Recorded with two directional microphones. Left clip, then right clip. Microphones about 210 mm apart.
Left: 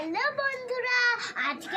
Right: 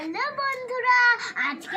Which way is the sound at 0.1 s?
10° left (ahead or behind).